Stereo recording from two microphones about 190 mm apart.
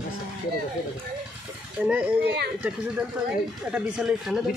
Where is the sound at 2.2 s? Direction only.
60° right (ahead or behind).